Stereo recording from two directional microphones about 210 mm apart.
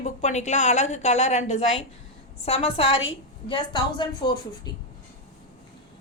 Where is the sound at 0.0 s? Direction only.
35° left (ahead or behind).